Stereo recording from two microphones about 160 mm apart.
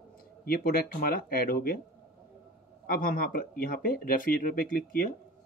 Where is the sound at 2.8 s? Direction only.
65° left (ahead or behind).